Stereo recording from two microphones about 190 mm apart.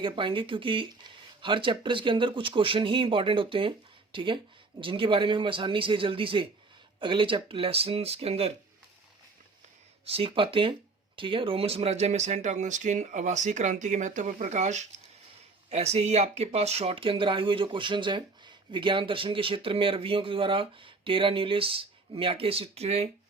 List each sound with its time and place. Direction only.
0.0 s speech: 25° right (ahead or behind)
10.1 s speech: 30° right (ahead or behind)